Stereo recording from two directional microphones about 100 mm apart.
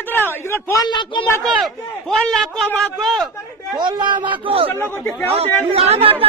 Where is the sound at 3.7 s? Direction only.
50° right (ahead or behind); by 4.7 s 75° right (ahead or behind).